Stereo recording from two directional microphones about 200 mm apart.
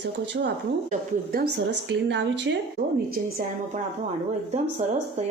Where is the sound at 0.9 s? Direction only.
50° right (ahead or behind).